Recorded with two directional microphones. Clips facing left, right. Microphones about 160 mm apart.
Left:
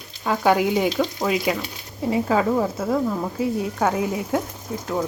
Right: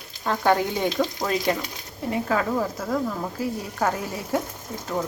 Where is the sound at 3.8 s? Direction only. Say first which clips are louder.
Left 2 dB; 5° left (ahead or behind).